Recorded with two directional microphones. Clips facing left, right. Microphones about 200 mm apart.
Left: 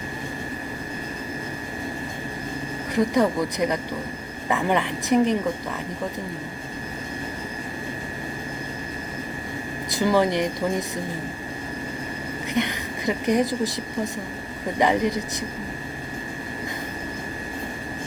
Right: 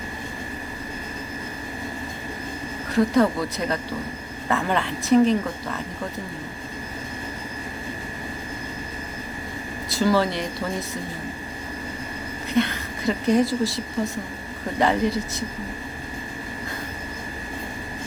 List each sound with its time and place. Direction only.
2.9 s a woman's voice: 15° left (ahead or behind)
9.9 s a woman's voice: 15° left (ahead or behind)
12.5 s a woman's voice: 15° left (ahead or behind)